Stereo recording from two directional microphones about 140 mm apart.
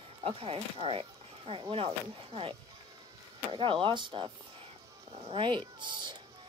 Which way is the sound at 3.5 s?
35° right (ahead or behind).